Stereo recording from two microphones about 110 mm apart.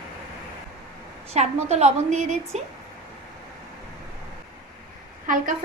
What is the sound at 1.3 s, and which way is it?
A woman's voice, 75° right (ahead or behind).